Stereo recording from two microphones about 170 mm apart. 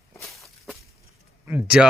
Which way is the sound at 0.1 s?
15° left (ahead or behind).